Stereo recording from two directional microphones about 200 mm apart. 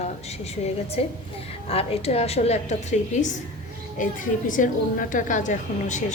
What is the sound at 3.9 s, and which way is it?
A woman's voice, 40° left (ahead or behind).